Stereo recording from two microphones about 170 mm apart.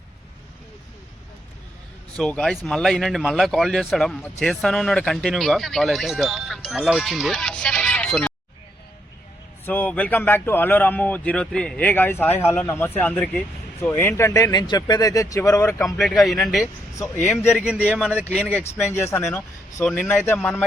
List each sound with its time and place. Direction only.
2.1 s a man's voice: 5° left (ahead or behind)
9.6 s a man's voice: 10° left (ahead or behind)
16.0 s a man's voice: centre (ahead or behind)
18.9 s a man's voice: 15° left (ahead or behind)